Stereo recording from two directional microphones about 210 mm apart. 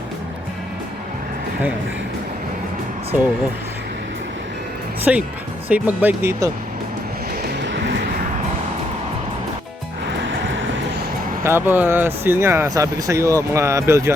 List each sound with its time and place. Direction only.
3.1 s speech: 5° right (ahead or behind)
5.1 s speech: 5° right (ahead or behind)
7.6 s vehicle: 60° right (ahead or behind)
11.4 s speech: 10° right (ahead or behind)